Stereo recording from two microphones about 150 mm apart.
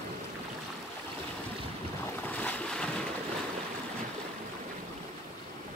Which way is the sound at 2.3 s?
10° left (ahead or behind).